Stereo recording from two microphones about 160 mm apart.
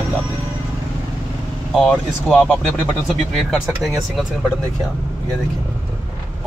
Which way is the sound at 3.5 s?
Centre (ahead or behind).